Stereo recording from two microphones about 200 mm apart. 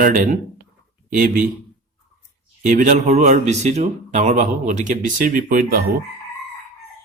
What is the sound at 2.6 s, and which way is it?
Speech, 40° right (ahead or behind).